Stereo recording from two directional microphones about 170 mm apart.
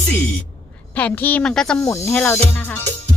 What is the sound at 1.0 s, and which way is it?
Speech, 10° left (ahead or behind).